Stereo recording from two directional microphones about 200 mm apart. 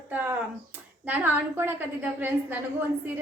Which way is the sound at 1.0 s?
10° right (ahead or behind).